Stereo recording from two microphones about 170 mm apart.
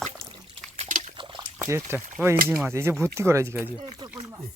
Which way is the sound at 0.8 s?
45° right (ahead or behind).